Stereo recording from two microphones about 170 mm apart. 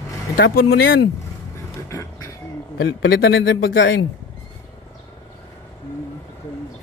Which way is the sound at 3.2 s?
90° left.